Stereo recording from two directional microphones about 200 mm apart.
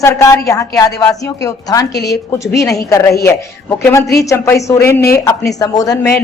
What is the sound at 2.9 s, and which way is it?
A woman's voice, 15° left (ahead or behind).